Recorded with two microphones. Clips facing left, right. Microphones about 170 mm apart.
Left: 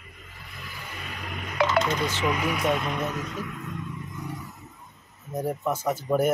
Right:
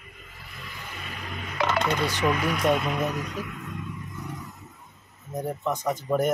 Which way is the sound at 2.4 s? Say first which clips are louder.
Right 2 dB; 5° left (ahead or behind).